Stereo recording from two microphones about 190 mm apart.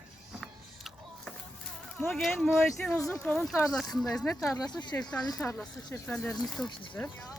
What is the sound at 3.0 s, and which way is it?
Speech, 15° left (ahead or behind).